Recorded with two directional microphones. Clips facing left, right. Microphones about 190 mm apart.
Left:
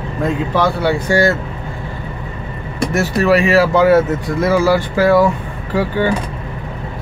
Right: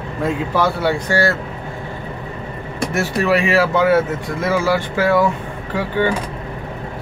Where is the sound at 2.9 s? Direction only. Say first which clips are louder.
Left 4 dB; 40° left (ahead or behind).